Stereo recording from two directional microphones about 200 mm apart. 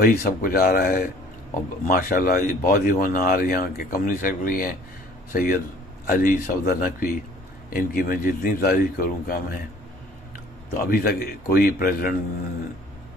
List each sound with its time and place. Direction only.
0.0 s a man's voice: 45° left (ahead or behind)
10.8 s a man's voice: 45° left (ahead or behind)